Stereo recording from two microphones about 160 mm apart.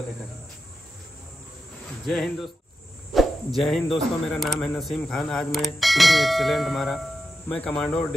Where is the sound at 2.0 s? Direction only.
Centre (ahead or behind).